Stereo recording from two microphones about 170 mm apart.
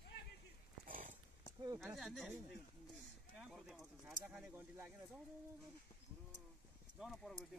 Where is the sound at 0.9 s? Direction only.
50° right (ahead or behind).